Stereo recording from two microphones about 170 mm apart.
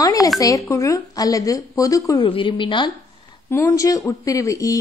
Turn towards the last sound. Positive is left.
turn(degrees=20)  # may be behind; listen again after turning